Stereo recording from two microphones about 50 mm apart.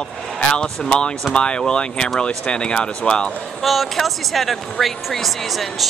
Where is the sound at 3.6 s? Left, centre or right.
Centre.